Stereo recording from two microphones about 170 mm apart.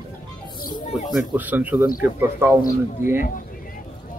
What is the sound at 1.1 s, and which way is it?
A man's voice, 10° right (ahead or behind).